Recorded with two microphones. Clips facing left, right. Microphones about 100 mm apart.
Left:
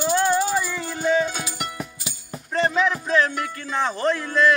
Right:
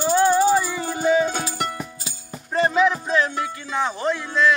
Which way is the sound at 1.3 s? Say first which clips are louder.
Right 5 dB; 40° right (ahead or behind).